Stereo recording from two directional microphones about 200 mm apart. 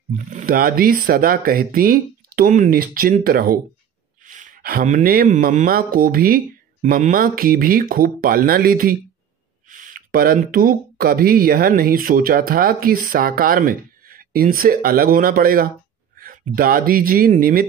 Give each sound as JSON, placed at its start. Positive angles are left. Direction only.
{"t": 0.1, "sound": "speech", "side_deg": -40}